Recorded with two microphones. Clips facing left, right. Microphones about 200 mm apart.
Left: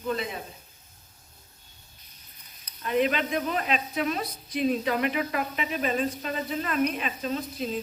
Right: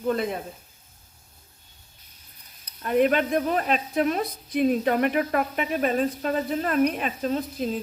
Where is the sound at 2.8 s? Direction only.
50° right (ahead or behind).